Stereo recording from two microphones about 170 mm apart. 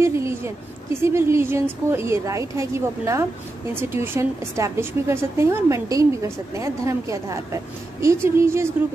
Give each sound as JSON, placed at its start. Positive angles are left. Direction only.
{"t": 0.0, "sound": "a woman's voice", "side_deg": -15}